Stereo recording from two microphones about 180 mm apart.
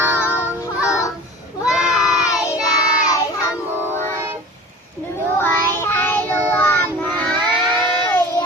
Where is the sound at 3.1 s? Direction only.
20° left (ahead or behind).